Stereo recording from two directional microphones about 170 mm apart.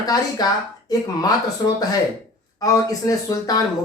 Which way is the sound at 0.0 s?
20° left (ahead or behind).